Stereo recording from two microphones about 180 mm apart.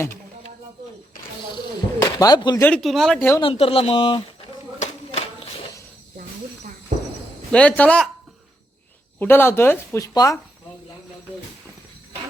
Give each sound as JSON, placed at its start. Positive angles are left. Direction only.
{"t": 1.5, "sound": "a sound", "side_deg": 25}
{"t": 2.6, "sound": "speech", "side_deg": 5}
{"t": 3.4, "sound": "speech", "side_deg": 30}
{"t": 4.8, "sound": "a sound", "side_deg": 35}
{"t": 6.9, "sound": "cricket", "side_deg": -45}
{"t": 7.5, "sound": "speech", "side_deg": 5}
{"t": 9.1, "sound": "speech", "side_deg": 10}